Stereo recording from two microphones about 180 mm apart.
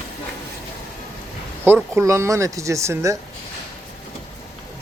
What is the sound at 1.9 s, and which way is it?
Speech, 15° right (ahead or behind).